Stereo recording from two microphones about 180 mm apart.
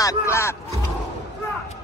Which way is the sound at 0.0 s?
15° left (ahead or behind).